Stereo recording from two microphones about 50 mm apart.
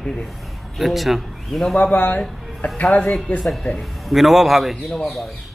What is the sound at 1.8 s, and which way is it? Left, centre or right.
Speech, left.